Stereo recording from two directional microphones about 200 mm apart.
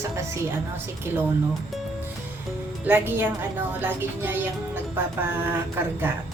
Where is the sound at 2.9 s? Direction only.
10° right (ahead or behind).